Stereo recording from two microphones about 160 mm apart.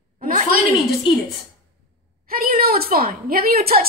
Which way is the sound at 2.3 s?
70° right (ahead or behind).